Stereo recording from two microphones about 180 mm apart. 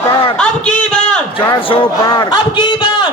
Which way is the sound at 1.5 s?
25° left (ahead or behind).